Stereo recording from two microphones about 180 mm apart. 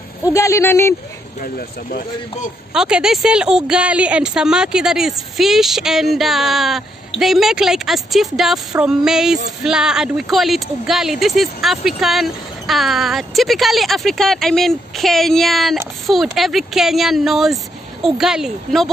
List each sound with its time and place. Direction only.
0.2 s speech: 20° left (ahead or behind)
1.4 s speech: 50° left (ahead or behind)
2.7 s speech: 5° right (ahead or behind)